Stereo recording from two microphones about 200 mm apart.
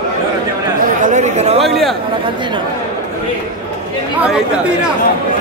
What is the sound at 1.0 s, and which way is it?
Chatter, 35° right (ahead or behind).